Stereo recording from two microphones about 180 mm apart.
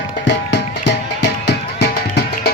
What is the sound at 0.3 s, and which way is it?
Music, 70° left (ahead or behind).